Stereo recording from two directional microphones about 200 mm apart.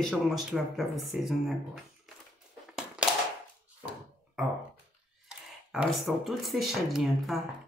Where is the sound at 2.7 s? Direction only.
5° right (ahead or behind).